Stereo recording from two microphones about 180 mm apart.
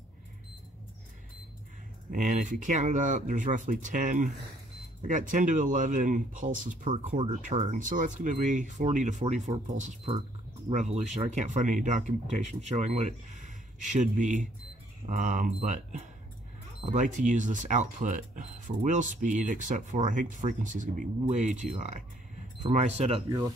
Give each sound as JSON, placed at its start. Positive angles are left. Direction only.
{"t": 2.0, "sound": "speech", "side_deg": -45}